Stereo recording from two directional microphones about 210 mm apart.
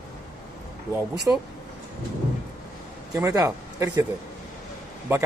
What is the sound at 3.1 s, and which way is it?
Speech, 15° right (ahead or behind).